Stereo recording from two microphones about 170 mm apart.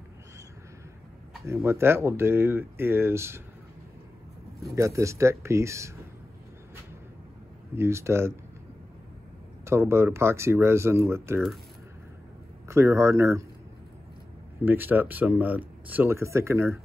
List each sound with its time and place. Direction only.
1.4 s speech: 15° right (ahead or behind)
4.7 s speech: 20° right (ahead or behind)
7.7 s speech: 15° right (ahead or behind)
9.7 s speech: 15° right (ahead or behind)
12.6 s speech: 15° right (ahead or behind)
14.6 s speech: 10° right (ahead or behind)